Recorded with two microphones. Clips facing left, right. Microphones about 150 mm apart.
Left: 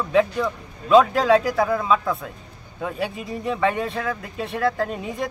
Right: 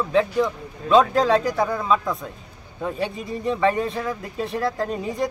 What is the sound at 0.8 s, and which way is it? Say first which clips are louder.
Speech: left 1 dB; 5° left (ahead or behind).